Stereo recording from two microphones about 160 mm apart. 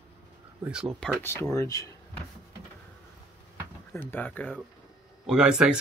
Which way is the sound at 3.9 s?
10° left (ahead or behind).